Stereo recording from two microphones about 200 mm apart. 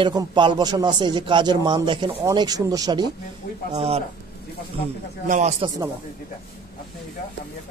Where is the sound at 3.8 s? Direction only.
30° right (ahead or behind).